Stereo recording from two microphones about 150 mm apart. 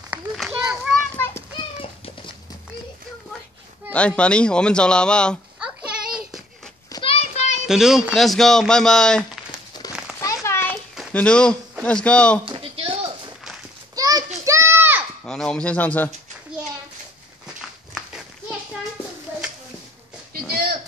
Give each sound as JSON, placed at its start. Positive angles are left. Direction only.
{"t": 0.1, "sound": "children playing", "side_deg": -5}
{"t": 1.1, "sound": "children playing", "side_deg": 15}
{"t": 3.9, "sound": "speech", "side_deg": 10}
{"t": 6.9, "sound": "children playing", "side_deg": 35}
{"t": 7.6, "sound": "speech", "side_deg": -5}
{"t": 9.5, "sound": "crumpling", "side_deg": 25}
{"t": 10.2, "sound": "a sound", "side_deg": 20}
{"t": 11.1, "sound": "speech", "side_deg": 5}
{"t": 12.4, "sound": "a sound", "side_deg": -35}
{"t": 13.9, "sound": "children playing", "side_deg": -25}
{"t": 15.2, "sound": "speech", "side_deg": 5}